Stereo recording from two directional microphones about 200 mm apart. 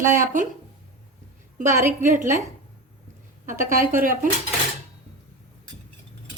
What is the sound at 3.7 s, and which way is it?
Speech, 45° right (ahead or behind).